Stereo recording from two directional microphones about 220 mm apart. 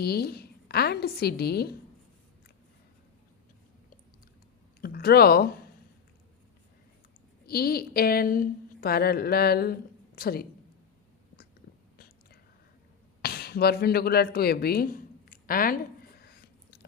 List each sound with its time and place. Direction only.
0.0 s a woman's voice: 45° left (ahead or behind)
4.8 s speech: 45° left (ahead or behind)
7.4 s a woman's voice: 45° left (ahead or behind)
11.9 s whispering: 45° left (ahead or behind)
13.2 s a sound: 45° left (ahead or behind)